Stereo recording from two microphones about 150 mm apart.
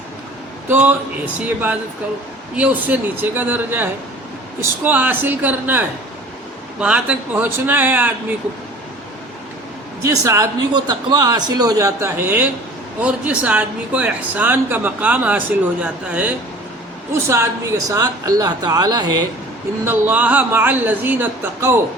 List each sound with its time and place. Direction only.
0.7 s speech: 10° right (ahead or behind)
10.0 s speech: 20° right (ahead or behind)
17.8 s speech: 25° right (ahead or behind)
19.8 s speech: 15° right (ahead or behind)